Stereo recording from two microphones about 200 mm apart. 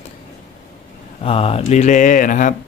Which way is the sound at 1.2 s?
30° left (ahead or behind).